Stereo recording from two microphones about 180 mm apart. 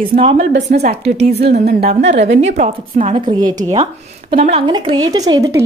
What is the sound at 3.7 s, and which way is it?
Speech, 30° right (ahead or behind).